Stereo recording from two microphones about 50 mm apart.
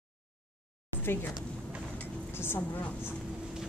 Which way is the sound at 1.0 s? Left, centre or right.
Left.